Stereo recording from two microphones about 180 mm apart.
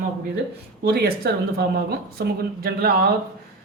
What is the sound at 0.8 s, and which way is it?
Speech, 60° right (ahead or behind).